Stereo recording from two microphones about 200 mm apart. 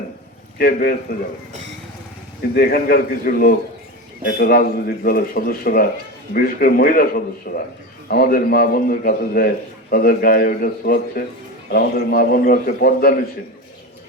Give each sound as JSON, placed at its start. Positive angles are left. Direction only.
{"t": 0.6, "sound": "speech", "side_deg": 50}
{"t": 2.6, "sound": "speech", "side_deg": 50}